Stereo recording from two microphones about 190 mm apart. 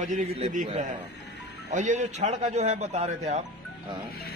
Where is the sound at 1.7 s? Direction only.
40° right (ahead or behind).